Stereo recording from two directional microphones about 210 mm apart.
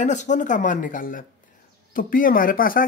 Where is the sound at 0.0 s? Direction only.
35° left (ahead or behind).